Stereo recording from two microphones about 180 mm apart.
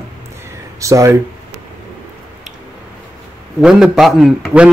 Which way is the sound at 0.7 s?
15° right (ahead or behind).